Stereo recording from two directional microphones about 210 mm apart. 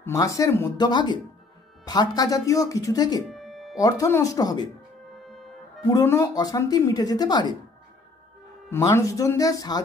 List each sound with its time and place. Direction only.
0.0 s speech: 15° left (ahead or behind)
3.3 s music: centre (ahead or behind)
3.7 s speech: 15° left (ahead or behind)
5.1 s music: centre (ahead or behind)
5.9 s speech: 15° left (ahead or behind)
8.6 s speech: 10° left (ahead or behind)